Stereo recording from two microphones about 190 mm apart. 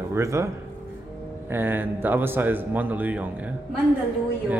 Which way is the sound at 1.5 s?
10° right (ahead or behind).